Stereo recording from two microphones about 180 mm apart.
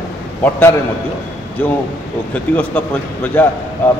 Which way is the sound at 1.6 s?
10° left (ahead or behind).